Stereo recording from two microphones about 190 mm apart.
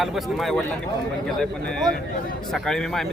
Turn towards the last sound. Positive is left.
turn(degrees=0)  # may be behind; listen again after turning